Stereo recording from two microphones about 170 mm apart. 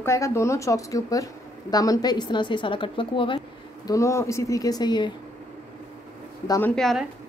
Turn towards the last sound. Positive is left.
turn(degrees=0)  # may be behind; listen again after turning